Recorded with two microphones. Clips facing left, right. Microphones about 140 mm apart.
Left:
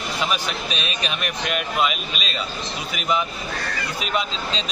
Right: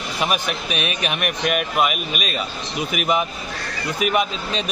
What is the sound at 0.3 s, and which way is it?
Speech, 65° right (ahead or behind).